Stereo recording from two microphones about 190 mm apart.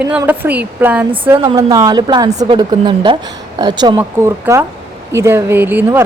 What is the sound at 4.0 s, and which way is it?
Speech, 10° right (ahead or behind).